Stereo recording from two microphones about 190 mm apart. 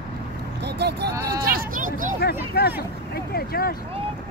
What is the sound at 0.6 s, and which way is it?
Vehicle, 60° right (ahead or behind).